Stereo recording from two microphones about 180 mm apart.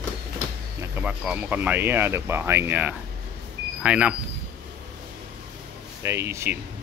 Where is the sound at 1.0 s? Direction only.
10° right (ahead or behind).